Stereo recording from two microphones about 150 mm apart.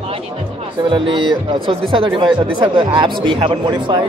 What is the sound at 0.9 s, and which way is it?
Speech, 35° right (ahead or behind).